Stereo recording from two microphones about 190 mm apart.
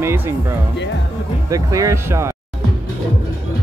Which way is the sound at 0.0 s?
10° right (ahead or behind).